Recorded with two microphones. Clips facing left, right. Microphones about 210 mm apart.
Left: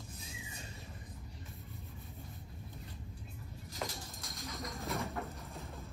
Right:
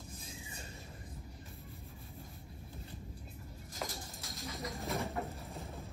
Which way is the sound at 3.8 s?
Centre (ahead or behind).